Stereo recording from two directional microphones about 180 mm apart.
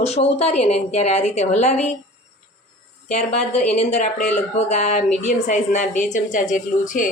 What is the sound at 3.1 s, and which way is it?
A woman's voice, 40° left (ahead or behind).